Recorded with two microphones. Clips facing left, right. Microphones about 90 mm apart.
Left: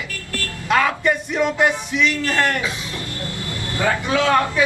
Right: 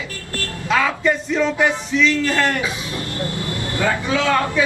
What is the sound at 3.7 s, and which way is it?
Speech, 20° left (ahead or behind).